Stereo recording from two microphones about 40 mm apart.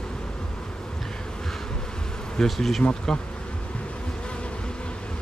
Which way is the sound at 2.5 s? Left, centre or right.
Centre.